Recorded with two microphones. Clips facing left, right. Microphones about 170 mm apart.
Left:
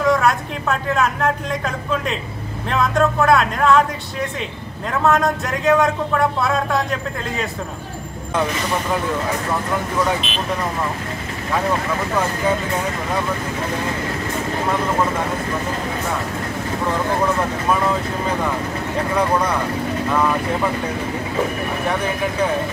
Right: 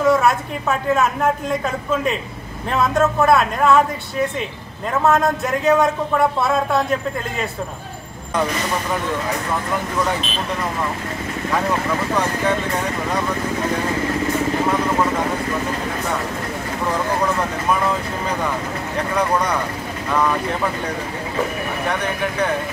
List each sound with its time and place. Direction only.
0.0 s speech: centre (ahead or behind)
4.9 s speech: centre (ahead or behind)
21.8 s speech: 5° left (ahead or behind)